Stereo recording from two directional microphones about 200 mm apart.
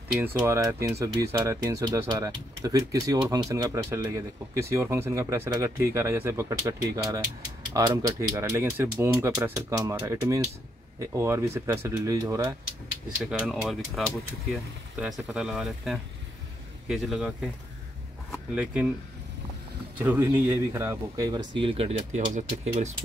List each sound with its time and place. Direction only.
0.2 s speech: 15° right (ahead or behind)
7.7 s speech: 15° right (ahead or behind)
13.2 s speech: centre (ahead or behind)
20.0 s speech: 10° right (ahead or behind); by 22.9 s 30° right (ahead or behind)